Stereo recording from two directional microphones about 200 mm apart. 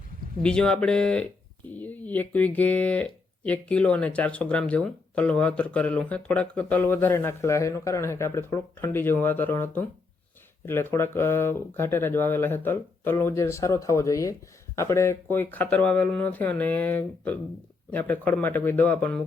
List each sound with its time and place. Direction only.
0.4 s speech: 5° left (ahead or behind)